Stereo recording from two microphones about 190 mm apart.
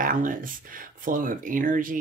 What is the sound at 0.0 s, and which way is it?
Speech, 45° right (ahead or behind).